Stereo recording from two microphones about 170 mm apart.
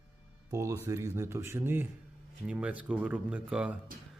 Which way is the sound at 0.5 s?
20° right (ahead or behind).